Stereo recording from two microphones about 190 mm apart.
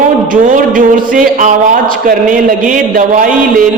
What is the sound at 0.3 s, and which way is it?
A man's voice, 45° right (ahead or behind).